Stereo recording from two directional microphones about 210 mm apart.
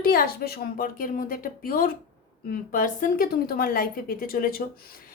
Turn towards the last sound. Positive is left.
turn(degrees=45)  # may be behind; listen again after turning